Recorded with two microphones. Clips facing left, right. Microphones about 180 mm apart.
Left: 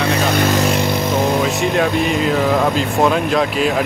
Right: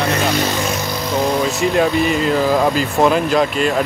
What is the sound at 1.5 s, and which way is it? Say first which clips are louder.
Speech: right 1 dB; centre (ahead or behind).